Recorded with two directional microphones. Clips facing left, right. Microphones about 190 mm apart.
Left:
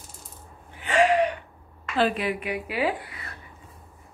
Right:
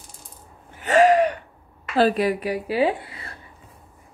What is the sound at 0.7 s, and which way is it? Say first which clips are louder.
Gasp: right 5 dB; 40° right (ahead or behind).